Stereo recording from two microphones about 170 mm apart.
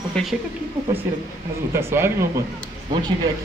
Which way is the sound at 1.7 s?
15° right (ahead or behind).